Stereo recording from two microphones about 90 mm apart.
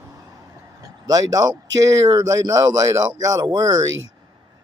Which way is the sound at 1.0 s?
45° right (ahead or behind).